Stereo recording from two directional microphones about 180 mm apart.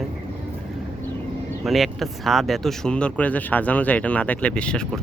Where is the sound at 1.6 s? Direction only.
Centre (ahead or behind).